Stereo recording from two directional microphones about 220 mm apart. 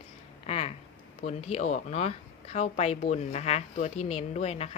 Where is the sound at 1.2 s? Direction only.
30° left (ahead or behind).